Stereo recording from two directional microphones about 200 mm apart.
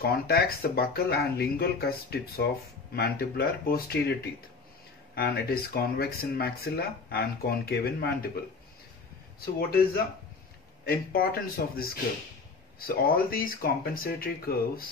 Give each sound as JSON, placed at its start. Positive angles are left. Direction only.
{"t": 0.0, "sound": "speech", "side_deg": 50}
{"t": 10.9, "sound": "speech", "side_deg": 50}